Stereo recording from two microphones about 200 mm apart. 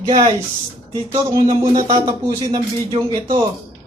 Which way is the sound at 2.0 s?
20° right (ahead or behind).